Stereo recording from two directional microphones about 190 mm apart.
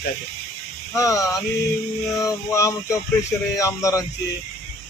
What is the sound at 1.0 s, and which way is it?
Speech, 15° left (ahead or behind).